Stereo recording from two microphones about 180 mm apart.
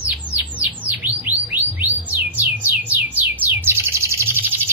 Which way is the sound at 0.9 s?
10° right (ahead or behind).